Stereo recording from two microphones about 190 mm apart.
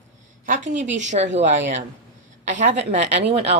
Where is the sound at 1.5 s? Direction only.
70° right (ahead or behind).